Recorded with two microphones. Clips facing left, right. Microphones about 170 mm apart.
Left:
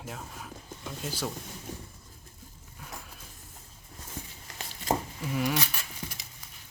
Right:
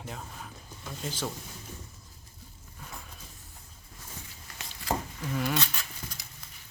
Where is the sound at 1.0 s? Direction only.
10° left (ahead or behind).